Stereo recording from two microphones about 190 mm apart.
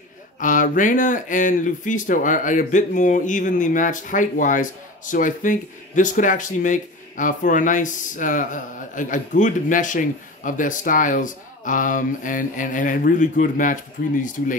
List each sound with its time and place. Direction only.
0.4 s speech: 45° left (ahead or behind)